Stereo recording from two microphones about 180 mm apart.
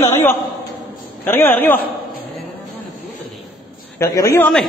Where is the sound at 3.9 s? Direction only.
15° left (ahead or behind).